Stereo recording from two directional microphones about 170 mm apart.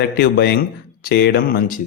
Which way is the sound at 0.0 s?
75° left (ahead or behind).